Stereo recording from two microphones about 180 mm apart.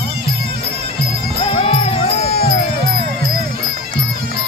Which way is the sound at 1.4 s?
30° left (ahead or behind).